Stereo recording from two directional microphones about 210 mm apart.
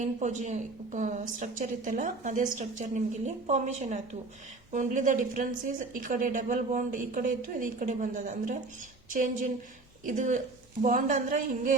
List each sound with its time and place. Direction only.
0.0 s a woman's voice: 35° right (ahead or behind)
10.1 s a woman's voice: 35° right (ahead or behind)